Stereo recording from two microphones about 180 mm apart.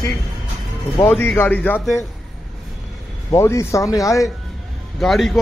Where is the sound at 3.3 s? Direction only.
15° left (ahead or behind).